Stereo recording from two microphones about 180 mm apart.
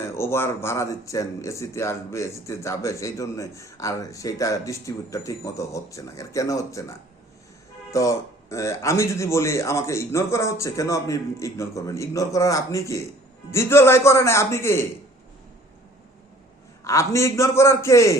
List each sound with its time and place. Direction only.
0.1 s speech: 15° left (ahead or behind)
16.8 s speech: 15° left (ahead or behind)